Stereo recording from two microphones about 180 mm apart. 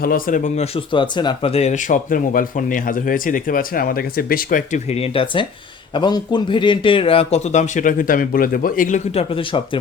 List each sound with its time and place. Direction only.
0.0 s speech: 50° left (ahead or behind)
0.9 s speech: 25° left (ahead or behind); by 4.8 s 50° left (ahead or behind)
4.9 s speech: 30° left (ahead or behind); by 9.0 s 50° left (ahead or behind)
9.1 s speech: 30° left (ahead or behind)